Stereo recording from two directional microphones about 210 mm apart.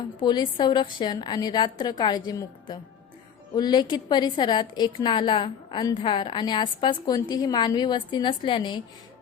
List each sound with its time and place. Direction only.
0.2 s a woman's voice: 20° left (ahead or behind)